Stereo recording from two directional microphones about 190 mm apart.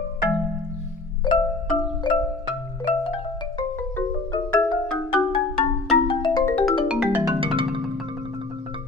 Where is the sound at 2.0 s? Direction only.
25° left (ahead or behind).